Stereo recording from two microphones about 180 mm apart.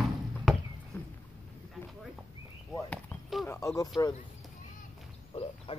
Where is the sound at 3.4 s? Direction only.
15° left (ahead or behind).